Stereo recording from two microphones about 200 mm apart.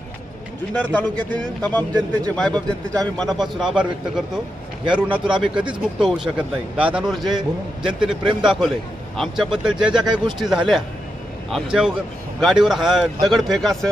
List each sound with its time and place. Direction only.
0.7 s a man's voice: 10° left (ahead or behind)
2.5 s speech: 20° right (ahead or behind)
3.2 s speech: centre (ahead or behind)